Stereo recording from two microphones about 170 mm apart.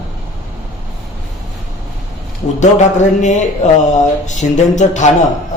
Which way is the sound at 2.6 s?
45° left (ahead or behind).